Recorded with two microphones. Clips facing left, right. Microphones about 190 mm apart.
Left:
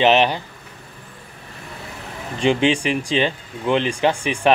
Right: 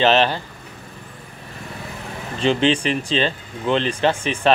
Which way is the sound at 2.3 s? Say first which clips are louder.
Even; 15° left (ahead or behind).